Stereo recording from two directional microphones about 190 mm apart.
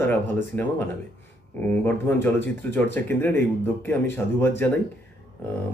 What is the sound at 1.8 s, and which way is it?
Speech, 10° left (ahead or behind).